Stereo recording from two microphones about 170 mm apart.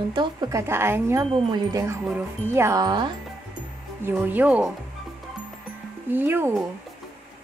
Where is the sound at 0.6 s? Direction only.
15° right (ahead or behind).